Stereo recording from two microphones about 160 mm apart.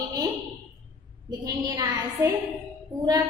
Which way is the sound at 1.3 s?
25° right (ahead or behind).